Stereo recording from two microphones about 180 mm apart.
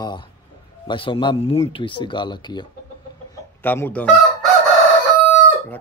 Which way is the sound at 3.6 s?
10° left (ahead or behind).